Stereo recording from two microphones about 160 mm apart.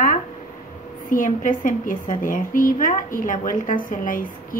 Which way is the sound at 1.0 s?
55° left (ahead or behind).